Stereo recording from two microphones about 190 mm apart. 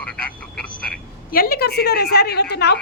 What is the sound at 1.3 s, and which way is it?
A woman's voice, 50° left (ahead or behind).